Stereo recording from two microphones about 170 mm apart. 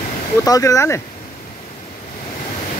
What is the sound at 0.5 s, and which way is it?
Speech, 20° left (ahead or behind).